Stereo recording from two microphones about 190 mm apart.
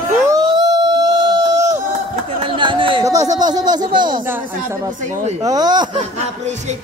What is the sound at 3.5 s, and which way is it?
Speech, 20° right (ahead or behind).